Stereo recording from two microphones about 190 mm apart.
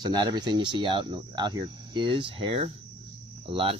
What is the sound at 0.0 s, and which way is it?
Speech, 20° right (ahead or behind).